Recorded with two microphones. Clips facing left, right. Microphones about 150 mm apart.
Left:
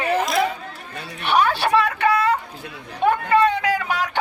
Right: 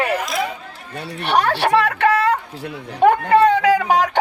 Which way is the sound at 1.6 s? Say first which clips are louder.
Right 2 dB; 75° right (ahead or behind).